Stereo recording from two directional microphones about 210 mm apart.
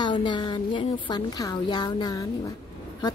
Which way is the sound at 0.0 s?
20° left (ahead or behind).